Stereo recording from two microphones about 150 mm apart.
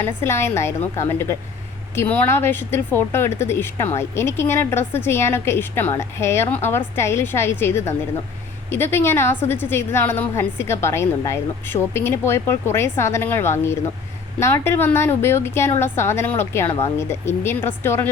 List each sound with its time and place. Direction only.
0.0 s a woman's voice: 15° left (ahead or behind)